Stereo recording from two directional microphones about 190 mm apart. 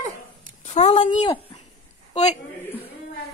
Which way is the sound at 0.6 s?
35° left (ahead or behind).